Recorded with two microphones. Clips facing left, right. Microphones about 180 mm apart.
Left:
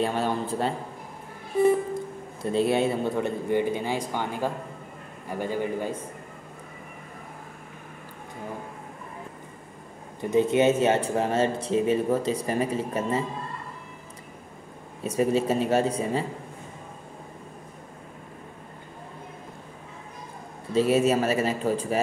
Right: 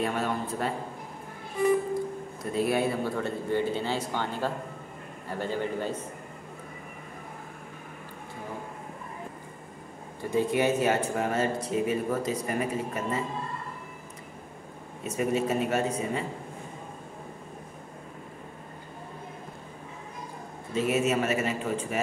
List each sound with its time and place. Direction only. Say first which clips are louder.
0.0 s a man's voice: left 3 dB; 30° left (ahead or behind)
2.5 s a man's voice: left 3 dB; 25° left (ahead or behind)
10.3 s speech: left 4 dB; 25° left (ahead or behind)
15.0 s a man's voice: left 4 dB; 30° left (ahead or behind)
20.7 s a man's voice: left 5 dB; 30° left (ahead or behind)